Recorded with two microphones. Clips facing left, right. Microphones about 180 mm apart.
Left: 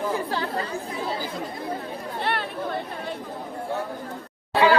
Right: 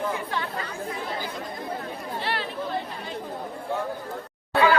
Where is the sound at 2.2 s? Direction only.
55° left (ahead or behind).